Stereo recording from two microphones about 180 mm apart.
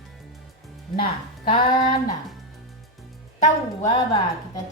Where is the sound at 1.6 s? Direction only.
25° left (ahead or behind).